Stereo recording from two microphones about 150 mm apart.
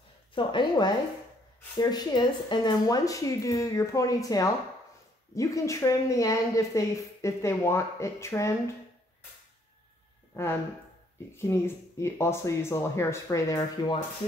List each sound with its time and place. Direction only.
0.3 s a woman's voice: 30° left (ahead or behind)
11.3 s speech: 15° left (ahead or behind)